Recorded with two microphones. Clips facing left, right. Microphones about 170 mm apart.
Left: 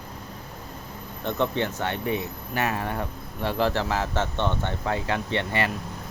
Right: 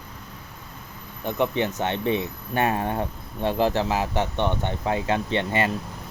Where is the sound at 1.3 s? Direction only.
15° right (ahead or behind).